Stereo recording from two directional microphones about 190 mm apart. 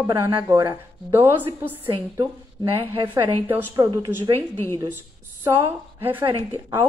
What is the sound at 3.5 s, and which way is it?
Speech, 15° right (ahead or behind).